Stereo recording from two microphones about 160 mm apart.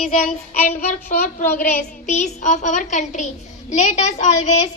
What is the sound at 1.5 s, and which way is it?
Child singing, 55° left (ahead or behind).